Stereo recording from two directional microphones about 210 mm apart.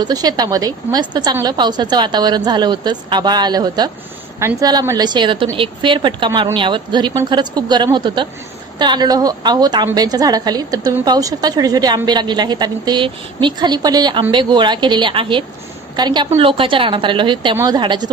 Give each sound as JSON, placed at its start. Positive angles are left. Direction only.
{"t": 0.0, "sound": "a woman's voice", "side_deg": -20}